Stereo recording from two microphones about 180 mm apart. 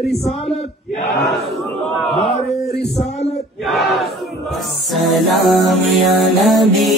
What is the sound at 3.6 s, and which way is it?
Battle cry, centre (ahead or behind).